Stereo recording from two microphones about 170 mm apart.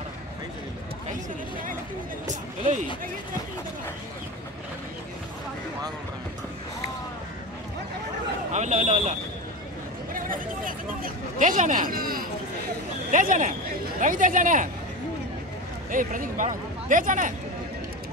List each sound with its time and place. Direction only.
2.2 s speech: 45° right (ahead or behind)
8.5 s speech: 45° right (ahead or behind)
10.1 s speech: 55° right (ahead or behind)
15.9 s speech: 50° right (ahead or behind)